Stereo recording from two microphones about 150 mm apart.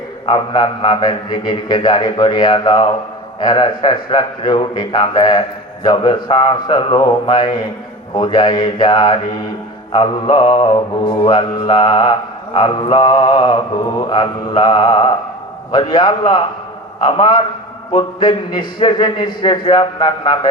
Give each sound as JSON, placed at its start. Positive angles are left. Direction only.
{"t": 0.3, "sound": "a man's voice", "side_deg": 35}